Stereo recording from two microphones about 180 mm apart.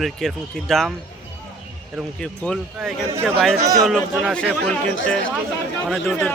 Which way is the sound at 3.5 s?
20° right (ahead or behind).